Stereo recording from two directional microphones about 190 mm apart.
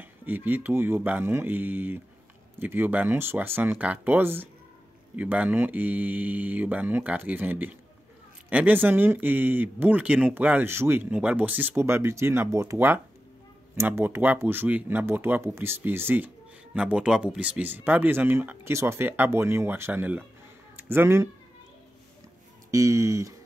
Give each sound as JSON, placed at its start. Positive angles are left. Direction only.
{"t": 0.0, "sound": "speech", "side_deg": -10}
{"t": 22.7, "sound": "speech", "side_deg": -15}